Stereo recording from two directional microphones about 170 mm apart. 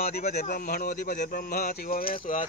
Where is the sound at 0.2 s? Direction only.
40° left (ahead or behind).